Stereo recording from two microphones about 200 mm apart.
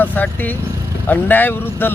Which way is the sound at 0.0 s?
10° left (ahead or behind).